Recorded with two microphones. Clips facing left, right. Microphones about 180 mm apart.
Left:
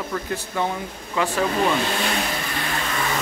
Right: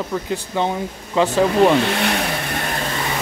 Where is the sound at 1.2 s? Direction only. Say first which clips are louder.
Right 6 dB; 30° right (ahead or behind).